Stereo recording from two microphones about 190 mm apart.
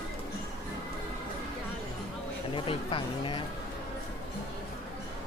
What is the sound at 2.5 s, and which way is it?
Speech, 25° left (ahead or behind).